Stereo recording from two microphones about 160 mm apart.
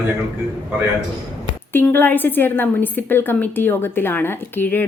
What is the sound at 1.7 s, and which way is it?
A woman's voice, 15° left (ahead or behind).